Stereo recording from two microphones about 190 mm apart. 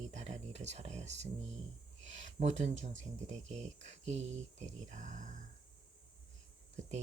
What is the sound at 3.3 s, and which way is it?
Speech, 35° right (ahead or behind).